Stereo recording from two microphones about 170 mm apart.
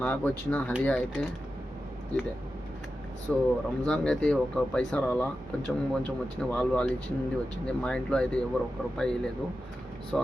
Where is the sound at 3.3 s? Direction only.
5° left (ahead or behind).